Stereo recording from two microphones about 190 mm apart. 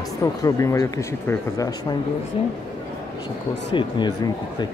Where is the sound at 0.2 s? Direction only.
15° left (ahead or behind).